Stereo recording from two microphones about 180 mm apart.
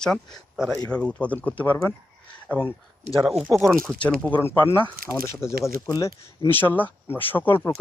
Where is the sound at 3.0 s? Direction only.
40° right (ahead or behind).